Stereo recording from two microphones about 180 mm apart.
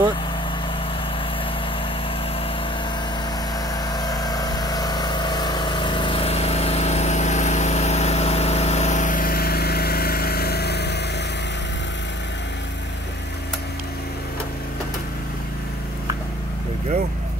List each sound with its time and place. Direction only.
3.9 s vehicle: 20° left (ahead or behind); by 11.1 s 70° left (ahead or behind)